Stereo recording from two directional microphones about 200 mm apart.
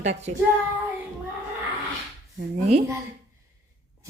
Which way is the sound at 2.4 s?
35° right (ahead or behind).